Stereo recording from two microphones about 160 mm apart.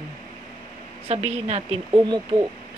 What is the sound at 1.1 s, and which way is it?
Speech, 40° right (ahead or behind).